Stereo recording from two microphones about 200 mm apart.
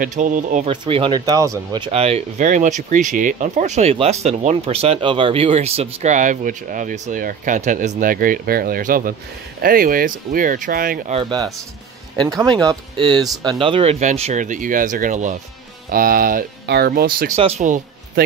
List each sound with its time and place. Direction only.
0.0 s speech: 40° right (ahead or behind)
0.7 s speech: 25° right (ahead or behind); by 11.1 s 45° right (ahead or behind)
11.1 s speech: 20° right (ahead or behind); by 17.3 s 45° right (ahead or behind)
17.4 s speech: 35° right (ahead or behind)